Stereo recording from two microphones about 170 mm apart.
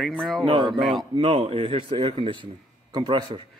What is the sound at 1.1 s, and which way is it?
Speech, 30° right (ahead or behind).